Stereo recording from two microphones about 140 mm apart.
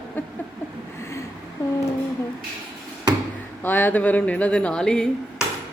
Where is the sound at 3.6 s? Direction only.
15° left (ahead or behind).